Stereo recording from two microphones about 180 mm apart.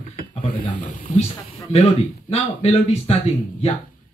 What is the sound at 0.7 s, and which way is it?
Speech, 45° left (ahead or behind).